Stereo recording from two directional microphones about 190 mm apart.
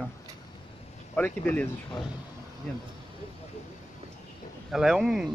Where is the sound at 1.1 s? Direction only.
10° left (ahead or behind).